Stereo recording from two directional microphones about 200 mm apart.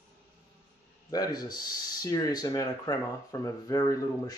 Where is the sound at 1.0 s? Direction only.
20° left (ahead or behind).